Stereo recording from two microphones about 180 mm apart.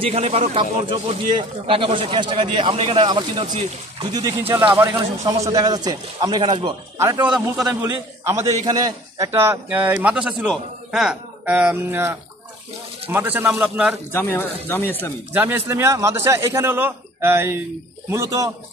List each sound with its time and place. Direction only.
0.0 s speech: 35° right (ahead or behind)
4.4 s a man's voice: 10° right (ahead or behind)
7.2 s a man's voice: 5° right (ahead or behind)
7.6 s a man's voice: 15° right (ahead or behind)
14.1 s speech: 10° left (ahead or behind)
15.3 s a man's voice: 10° right (ahead or behind)